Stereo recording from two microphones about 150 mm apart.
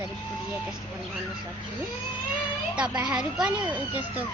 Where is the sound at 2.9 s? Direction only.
5° right (ahead or behind).